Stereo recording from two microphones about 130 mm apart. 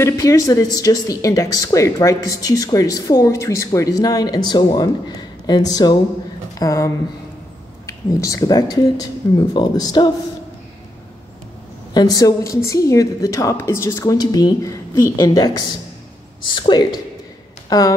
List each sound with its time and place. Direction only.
0.0 s a woman's voice: 25° left (ahead or behind)
11.9 s a woman's voice: 30° left (ahead or behind)